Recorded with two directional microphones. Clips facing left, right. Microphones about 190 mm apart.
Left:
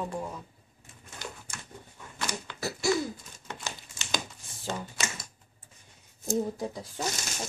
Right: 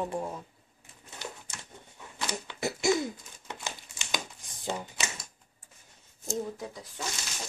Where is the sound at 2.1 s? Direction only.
20° right (ahead or behind).